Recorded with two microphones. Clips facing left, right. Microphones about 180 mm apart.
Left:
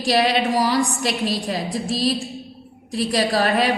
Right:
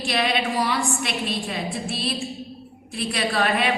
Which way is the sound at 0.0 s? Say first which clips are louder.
Left 5 dB; 40° left (ahead or behind).